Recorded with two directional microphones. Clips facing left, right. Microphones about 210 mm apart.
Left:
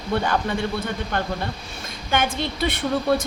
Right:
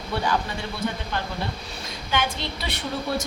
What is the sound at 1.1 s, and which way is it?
A woman's voice, 50° left (ahead or behind).